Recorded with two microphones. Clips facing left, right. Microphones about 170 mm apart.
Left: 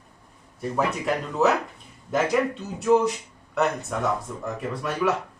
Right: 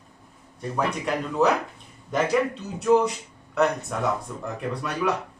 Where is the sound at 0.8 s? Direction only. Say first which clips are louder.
Left 1 dB; centre (ahead or behind).